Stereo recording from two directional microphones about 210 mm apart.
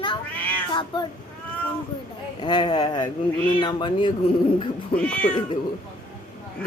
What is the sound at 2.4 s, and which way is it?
Speech, 20° left (ahead or behind).